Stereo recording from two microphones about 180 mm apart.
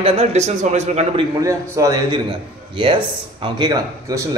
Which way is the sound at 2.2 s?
25° right (ahead or behind).